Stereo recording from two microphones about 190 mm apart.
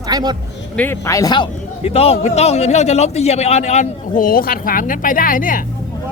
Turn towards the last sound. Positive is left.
turn(degrees=45)  # may be behind; listen again after turning